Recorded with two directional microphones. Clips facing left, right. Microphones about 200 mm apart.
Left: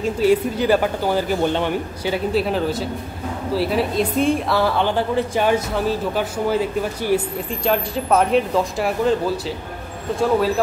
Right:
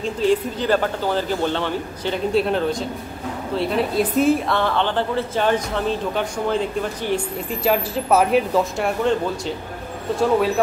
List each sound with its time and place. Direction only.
0.0 s a woman's voice: 10° left (ahead or behind)
7.6 s speech: 5° right (ahead or behind)